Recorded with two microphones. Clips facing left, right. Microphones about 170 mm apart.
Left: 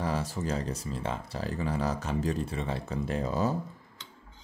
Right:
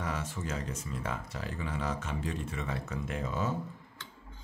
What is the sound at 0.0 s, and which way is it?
Speech, 35° left (ahead or behind).